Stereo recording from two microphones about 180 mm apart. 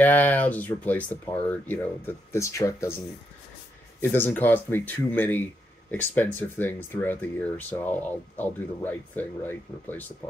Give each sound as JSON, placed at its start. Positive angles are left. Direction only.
{"t": 0.0, "sound": "speech", "side_deg": 10}
{"t": 4.0, "sound": "speech", "side_deg": 10}